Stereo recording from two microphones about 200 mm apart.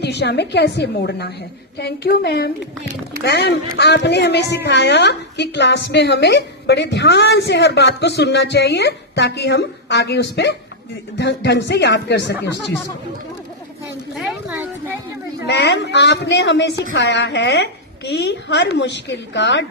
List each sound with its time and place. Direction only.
0.0 s a woman's voice: 55° left (ahead or behind)
14.2 s a sound: 5° right (ahead or behind)
15.4 s a woman's voice: 60° left (ahead or behind)